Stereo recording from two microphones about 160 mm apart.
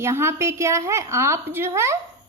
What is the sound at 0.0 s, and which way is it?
A woman's voice, 15° right (ahead or behind).